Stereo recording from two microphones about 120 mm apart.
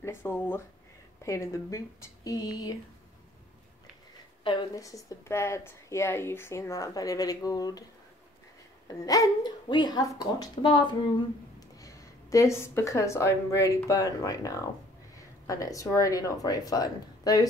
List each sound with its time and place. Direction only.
0.0 s speech: 20° left (ahead or behind)
4.7 s speech: 30° left (ahead or behind)
8.8 s speech: 30° left (ahead or behind)
11.8 s speech: 25° left (ahead or behind)